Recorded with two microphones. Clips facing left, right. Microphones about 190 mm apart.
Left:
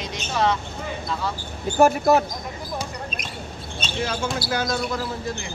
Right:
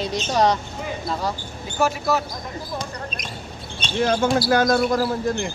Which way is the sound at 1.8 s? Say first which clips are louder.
Left 5 dB; 55° left (ahead or behind).